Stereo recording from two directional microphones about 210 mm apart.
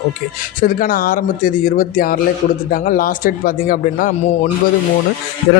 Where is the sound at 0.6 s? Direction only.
40° left (ahead or behind).